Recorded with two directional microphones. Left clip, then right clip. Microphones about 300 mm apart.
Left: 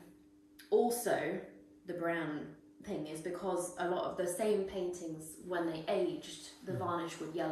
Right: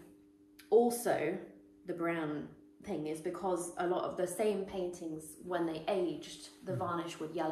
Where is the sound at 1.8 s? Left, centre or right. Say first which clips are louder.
Even; centre.